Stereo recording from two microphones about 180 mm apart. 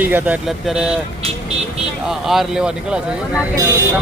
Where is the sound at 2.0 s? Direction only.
Centre (ahead or behind).